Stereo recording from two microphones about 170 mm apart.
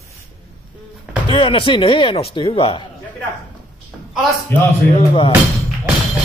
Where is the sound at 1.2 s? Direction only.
30° left (ahead or behind).